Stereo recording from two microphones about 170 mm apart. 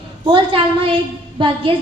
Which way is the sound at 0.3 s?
30° right (ahead or behind).